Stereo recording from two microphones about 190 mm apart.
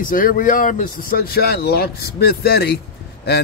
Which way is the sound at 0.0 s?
45° left (ahead or behind).